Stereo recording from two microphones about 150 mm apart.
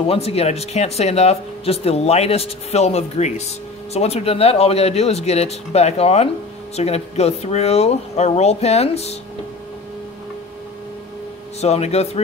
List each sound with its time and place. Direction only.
0.0 s speech: 40° left (ahead or behind)
11.6 s speech: 45° left (ahead or behind)